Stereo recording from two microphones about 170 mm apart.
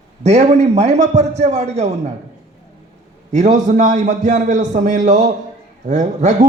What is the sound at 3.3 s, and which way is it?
A man's voice, 45° right (ahead or behind).